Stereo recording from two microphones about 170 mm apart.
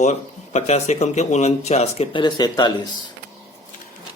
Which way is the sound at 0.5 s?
40° left (ahead or behind).